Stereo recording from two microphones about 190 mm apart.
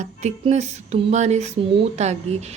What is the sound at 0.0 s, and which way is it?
A woman's voice, 35° right (ahead or behind).